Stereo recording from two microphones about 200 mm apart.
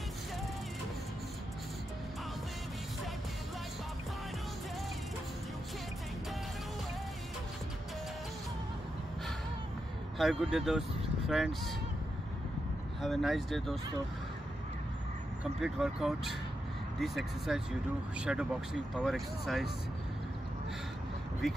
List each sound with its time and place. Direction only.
10.1 s speech: centre (ahead or behind)
13.0 s speech: centre (ahead or behind)
15.6 s speech: centre (ahead or behind)